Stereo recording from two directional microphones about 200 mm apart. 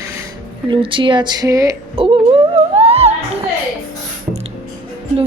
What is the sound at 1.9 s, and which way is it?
Music, 30° right (ahead or behind).